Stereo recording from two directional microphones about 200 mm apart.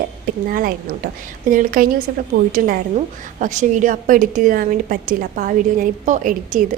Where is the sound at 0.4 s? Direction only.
45° right (ahead or behind).